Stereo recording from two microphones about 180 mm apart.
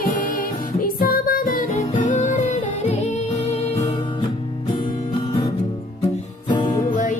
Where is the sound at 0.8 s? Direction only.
55° left (ahead or behind).